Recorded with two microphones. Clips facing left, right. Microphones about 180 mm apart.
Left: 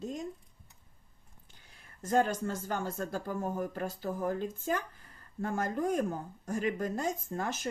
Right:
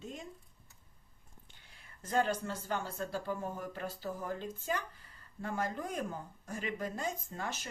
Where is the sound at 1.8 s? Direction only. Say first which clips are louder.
Left 4 dB; 45° left (ahead or behind).